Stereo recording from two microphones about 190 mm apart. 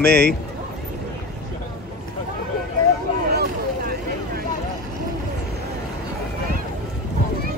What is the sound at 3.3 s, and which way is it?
Vehicle, 55° right (ahead or behind).